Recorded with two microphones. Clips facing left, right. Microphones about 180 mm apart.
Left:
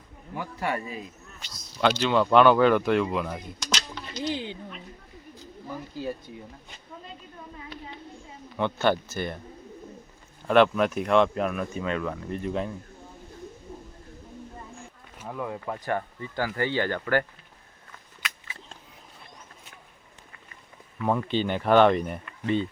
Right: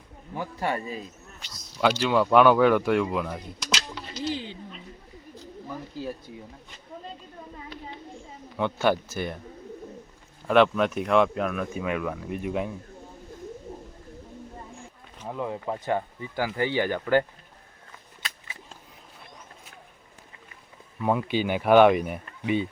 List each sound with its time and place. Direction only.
0.6 s speech: 30° right (ahead or behind)
1.5 s speech: 5° right (ahead or behind)
8.5 s speech: 5° right (ahead or behind)
10.4 s speech: centre (ahead or behind)
11.7 s speech: 10° right (ahead or behind)
15.3 s speech: 20° right (ahead or behind)
21.0 s speech: 10° right (ahead or behind)